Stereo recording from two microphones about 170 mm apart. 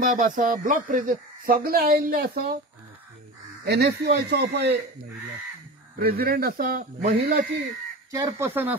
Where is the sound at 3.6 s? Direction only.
70° right (ahead or behind).